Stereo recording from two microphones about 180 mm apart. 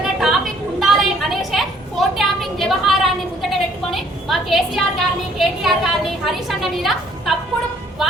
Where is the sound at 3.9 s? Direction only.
Centre (ahead or behind).